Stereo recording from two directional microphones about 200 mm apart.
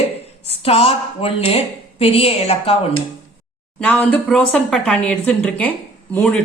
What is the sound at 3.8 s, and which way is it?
Speech, 5° left (ahead or behind).